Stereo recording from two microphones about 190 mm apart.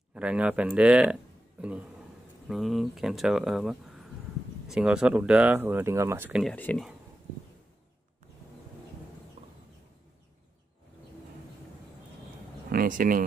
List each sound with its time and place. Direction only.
0.1 s speech: 5° right (ahead or behind)
6.4 s speech: 10° left (ahead or behind)
12.7 s speech: 45° right (ahead or behind)